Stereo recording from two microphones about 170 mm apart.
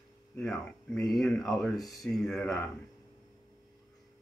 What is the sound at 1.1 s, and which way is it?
Speech, centre (ahead or behind).